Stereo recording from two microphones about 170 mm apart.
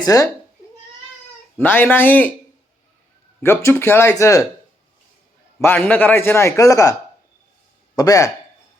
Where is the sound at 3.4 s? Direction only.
10° left (ahead or behind).